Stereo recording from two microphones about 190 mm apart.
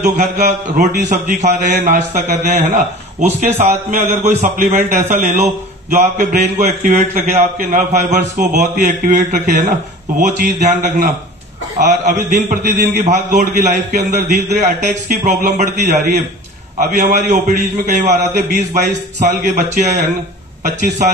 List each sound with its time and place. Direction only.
0.0 s a man's voice: 40° right (ahead or behind)